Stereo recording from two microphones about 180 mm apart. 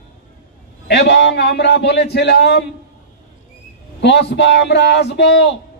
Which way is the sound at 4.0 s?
75° left (ahead or behind).